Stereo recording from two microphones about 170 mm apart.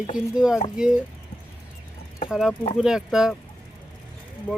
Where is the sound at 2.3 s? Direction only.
5° right (ahead or behind).